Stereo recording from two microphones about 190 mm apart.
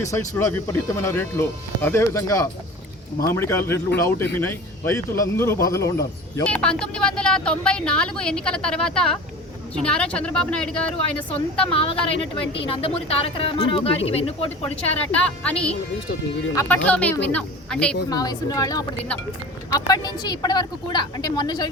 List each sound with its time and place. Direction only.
0.1 s speech: 15° left (ahead or behind)
11.7 s speech: 30° left (ahead or behind)
15.1 s speech: 5° left (ahead or behind)
18.1 s speech: 20° left (ahead or behind)